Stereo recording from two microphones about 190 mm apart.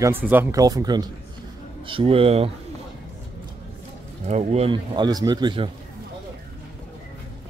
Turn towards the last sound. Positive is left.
turn(degrees=-25)  # may be behind; listen again after turning